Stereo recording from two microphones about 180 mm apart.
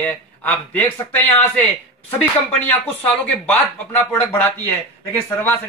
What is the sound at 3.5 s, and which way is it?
A man's voice, 10° left (ahead or behind).